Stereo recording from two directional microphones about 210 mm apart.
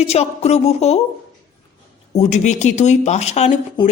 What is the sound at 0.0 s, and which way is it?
Speech, 30° left (ahead or behind).